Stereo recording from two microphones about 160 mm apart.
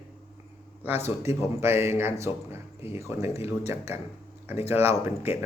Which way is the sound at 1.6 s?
15° right (ahead or behind).